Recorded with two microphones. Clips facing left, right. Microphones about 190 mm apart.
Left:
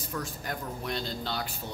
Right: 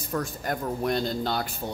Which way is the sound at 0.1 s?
50° right (ahead or behind).